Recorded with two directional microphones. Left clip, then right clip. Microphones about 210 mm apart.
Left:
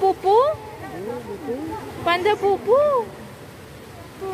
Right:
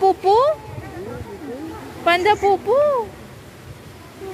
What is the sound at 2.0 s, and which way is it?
Speech, 15° right (ahead or behind).